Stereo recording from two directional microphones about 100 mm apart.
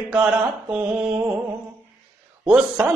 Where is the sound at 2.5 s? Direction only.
15° right (ahead or behind).